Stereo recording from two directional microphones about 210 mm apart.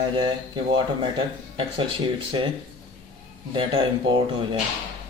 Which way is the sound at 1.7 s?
25° right (ahead or behind).